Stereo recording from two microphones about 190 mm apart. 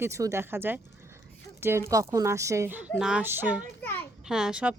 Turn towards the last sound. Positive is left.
turn(degrees=-5)  # may be behind; listen again after turning